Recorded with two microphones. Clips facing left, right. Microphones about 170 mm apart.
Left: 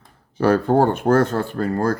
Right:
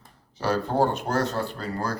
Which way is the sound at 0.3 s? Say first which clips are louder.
Left 7 dB; 55° left (ahead or behind).